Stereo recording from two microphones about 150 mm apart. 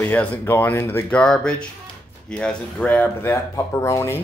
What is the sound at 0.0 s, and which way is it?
Speech, 10° left (ahead or behind).